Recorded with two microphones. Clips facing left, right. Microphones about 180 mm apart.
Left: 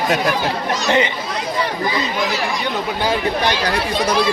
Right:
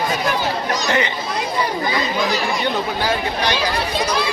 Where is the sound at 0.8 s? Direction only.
20° left (ahead or behind).